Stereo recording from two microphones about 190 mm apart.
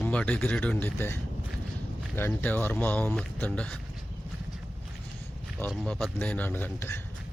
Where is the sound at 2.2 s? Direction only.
10° left (ahead or behind).